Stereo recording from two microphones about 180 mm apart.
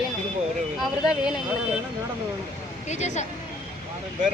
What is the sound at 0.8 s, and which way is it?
Speech, 5° right (ahead or behind).